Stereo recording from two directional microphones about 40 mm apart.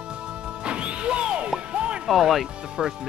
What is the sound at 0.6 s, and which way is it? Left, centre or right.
Music, right.